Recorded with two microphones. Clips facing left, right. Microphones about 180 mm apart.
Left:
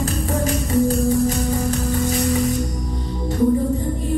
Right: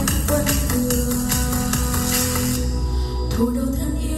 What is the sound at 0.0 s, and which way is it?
Music, 85° right.